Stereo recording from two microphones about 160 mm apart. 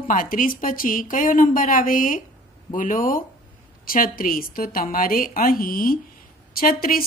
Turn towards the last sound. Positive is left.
turn(degrees=65)  # may be behind; listen again after turning